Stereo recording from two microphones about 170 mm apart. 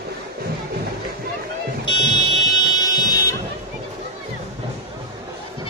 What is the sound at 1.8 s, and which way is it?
Music, 25° left (ahead or behind).